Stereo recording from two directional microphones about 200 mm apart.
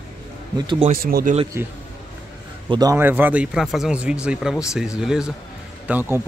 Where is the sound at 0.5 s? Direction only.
25° right (ahead or behind).